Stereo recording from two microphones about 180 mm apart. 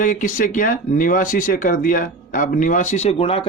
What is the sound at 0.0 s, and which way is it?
Speech, 45° left (ahead or behind).